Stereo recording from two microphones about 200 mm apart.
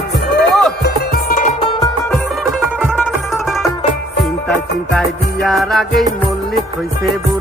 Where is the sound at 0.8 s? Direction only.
50° left (ahead or behind).